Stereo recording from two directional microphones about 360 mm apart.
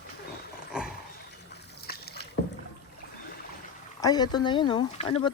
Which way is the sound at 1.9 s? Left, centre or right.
Left.